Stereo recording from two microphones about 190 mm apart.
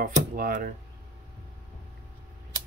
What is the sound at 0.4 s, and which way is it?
Speech, 45° right (ahead or behind).